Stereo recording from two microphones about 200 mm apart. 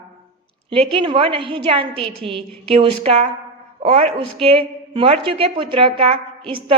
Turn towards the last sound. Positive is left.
turn(degrees=-25)  # may be behind; listen again after turning